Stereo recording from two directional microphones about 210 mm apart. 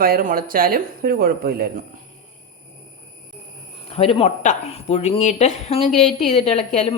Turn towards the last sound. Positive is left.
turn(degrees=30)  # may be behind; listen again after turning